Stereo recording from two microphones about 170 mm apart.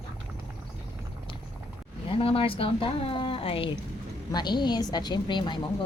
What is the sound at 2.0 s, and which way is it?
A woman's voice, 30° left (ahead or behind).